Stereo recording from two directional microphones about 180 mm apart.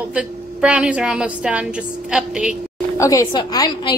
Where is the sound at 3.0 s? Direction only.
20° left (ahead or behind).